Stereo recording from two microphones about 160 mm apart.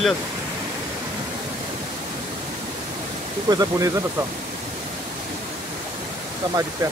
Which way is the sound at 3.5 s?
25° right (ahead or behind).